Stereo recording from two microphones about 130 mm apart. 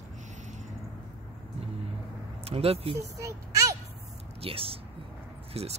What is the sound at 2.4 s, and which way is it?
Speech, 50° right (ahead or behind).